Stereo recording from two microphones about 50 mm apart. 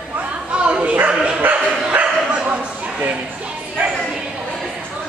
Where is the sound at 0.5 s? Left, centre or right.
Right.